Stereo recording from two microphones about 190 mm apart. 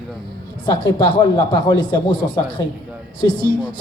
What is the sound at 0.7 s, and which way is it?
A woman's voice, 25° left (ahead or behind).